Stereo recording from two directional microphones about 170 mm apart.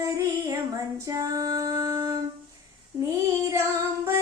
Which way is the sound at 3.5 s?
15° right (ahead or behind).